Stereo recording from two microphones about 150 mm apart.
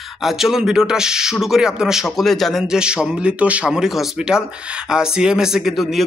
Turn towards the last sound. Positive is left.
turn(degrees=0)  # may be behind; listen again after turning